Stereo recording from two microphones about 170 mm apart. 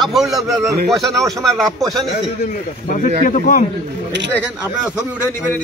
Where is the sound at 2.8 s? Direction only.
50° left (ahead or behind).